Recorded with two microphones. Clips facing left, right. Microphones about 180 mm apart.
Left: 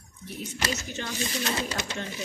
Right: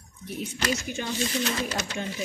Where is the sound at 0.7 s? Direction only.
10° right (ahead or behind).